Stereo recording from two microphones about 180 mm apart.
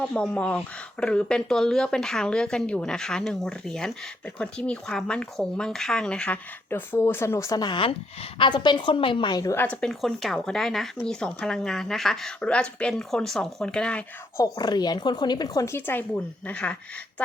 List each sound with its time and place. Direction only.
0.0 s speech: 5° left (ahead or behind)
9.6 s speech: 5° left (ahead or behind)
14.3 s speech: 20° left (ahead or behind)